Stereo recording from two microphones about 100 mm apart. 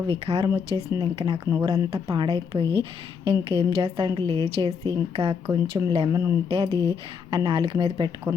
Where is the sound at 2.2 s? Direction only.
65° right (ahead or behind).